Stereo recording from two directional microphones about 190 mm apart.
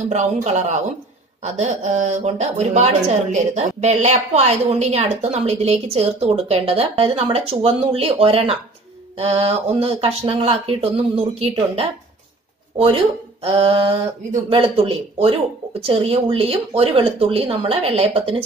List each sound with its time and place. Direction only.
0.1 s speech: 35° right (ahead or behind)